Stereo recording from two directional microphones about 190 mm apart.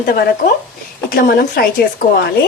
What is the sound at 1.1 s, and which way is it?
Speech, 50° left (ahead or behind).